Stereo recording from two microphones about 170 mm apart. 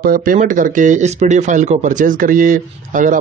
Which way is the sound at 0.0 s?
55° right (ahead or behind).